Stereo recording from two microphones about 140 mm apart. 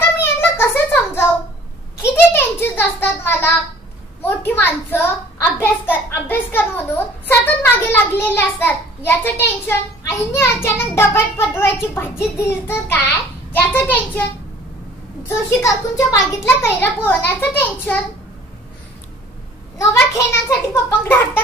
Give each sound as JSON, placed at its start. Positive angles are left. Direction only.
{"t": 0.2, "sound": "a sound", "side_deg": 15}
{"t": 4.2, "sound": "a child's voice", "side_deg": 15}
{"t": 15.2, "sound": "a child's voice", "side_deg": 20}
{"t": 19.8, "sound": "a child's voice", "side_deg": 20}